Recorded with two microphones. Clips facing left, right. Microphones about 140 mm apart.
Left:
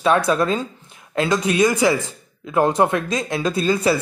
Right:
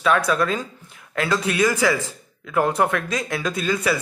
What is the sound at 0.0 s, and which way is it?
A man's voice, 25° left (ahead or behind).